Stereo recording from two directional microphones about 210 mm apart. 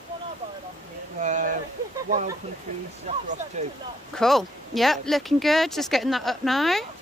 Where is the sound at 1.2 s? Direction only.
35° right (ahead or behind).